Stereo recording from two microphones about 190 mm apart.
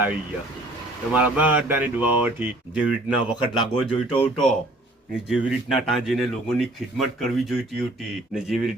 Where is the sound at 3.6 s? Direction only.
25° left (ahead or behind).